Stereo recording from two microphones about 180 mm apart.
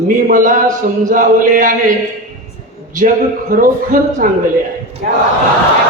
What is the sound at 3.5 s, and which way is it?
Speech, 50° right (ahead or behind).